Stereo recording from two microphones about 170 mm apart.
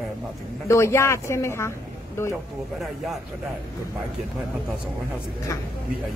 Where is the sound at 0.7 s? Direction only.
15° left (ahead or behind).